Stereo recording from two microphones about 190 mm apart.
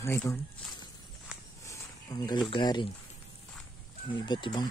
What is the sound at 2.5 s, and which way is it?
Speech, 25° left (ahead or behind).